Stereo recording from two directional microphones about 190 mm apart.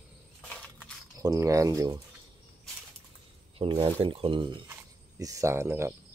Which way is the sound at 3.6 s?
30° right (ahead or behind).